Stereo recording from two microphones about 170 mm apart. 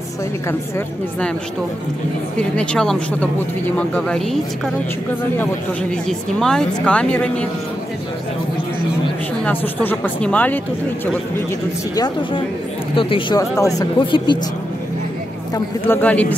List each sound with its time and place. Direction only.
0.5 s a woman's voice: 15° left (ahead or behind)
2.3 s speech: 5° left (ahead or behind)
6.0 s a woman's voice: 5° left (ahead or behind)
9.4 s a woman's voice: 10° left (ahead or behind)
11.9 s speech: 20° left (ahead or behind)
15.5 s a woman's voice: 10° left (ahead or behind)